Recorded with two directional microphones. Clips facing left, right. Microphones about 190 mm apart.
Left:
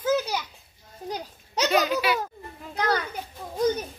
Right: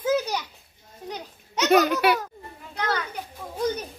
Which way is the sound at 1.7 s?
55° right (ahead or behind).